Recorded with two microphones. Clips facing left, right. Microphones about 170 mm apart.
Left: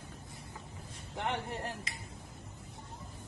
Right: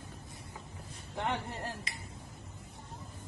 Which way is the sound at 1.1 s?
20° left (ahead or behind).